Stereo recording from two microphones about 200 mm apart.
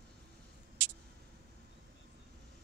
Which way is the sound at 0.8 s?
65° right (ahead or behind).